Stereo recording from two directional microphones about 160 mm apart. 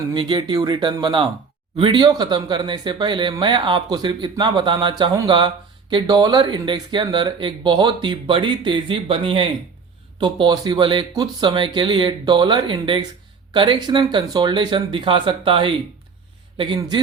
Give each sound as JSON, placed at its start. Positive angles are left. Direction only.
{"t": 0.1, "sound": "a man's voice", "side_deg": -30}